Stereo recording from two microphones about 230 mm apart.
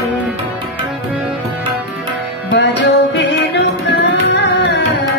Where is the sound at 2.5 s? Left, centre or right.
Left.